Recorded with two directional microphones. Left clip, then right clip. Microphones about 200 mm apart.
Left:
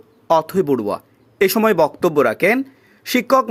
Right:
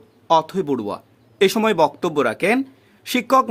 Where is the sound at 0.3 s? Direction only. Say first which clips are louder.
Left 2 dB; 15° left (ahead or behind).